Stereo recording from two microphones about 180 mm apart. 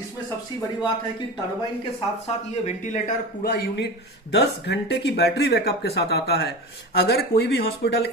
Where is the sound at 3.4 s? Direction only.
70° left (ahead or behind).